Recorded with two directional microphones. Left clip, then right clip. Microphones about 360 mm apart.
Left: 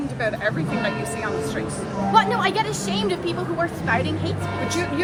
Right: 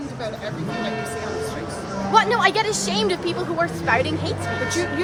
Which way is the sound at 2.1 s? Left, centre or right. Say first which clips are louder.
Right 2 dB; right.